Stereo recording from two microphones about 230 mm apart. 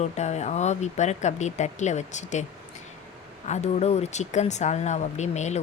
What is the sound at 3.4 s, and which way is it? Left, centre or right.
Speech, left.